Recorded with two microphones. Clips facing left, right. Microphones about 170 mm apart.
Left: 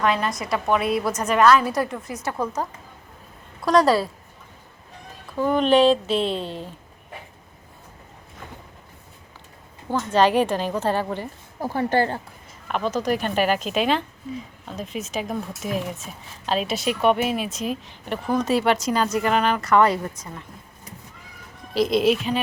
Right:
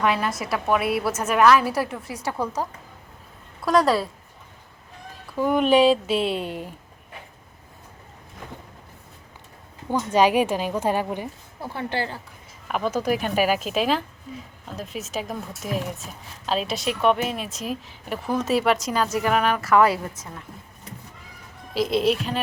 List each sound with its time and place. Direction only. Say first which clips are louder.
0.0 s a woman's voice: left 1 dB; 10° right (ahead or behind)
5.4 s a woman's voice: even; 10° right (ahead or behind)
9.9 s a woman's voice: even; 10° right (ahead or behind)
11.6 s speech: left 7 dB; 40° left (ahead or behind)
12.6 s a woman's voice: even; 10° right (ahead or behind)
21.7 s a woman's voice: left 2 dB; centre (ahead or behind)